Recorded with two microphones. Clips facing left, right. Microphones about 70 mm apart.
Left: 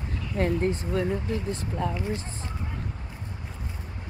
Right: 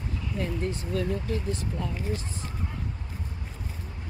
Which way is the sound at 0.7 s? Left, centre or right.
Left.